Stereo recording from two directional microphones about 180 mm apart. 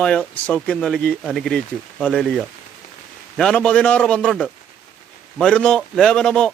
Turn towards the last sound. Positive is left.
turn(degrees=5)  # may be behind; listen again after turning